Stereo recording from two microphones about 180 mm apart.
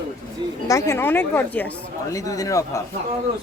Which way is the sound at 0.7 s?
15° left (ahead or behind).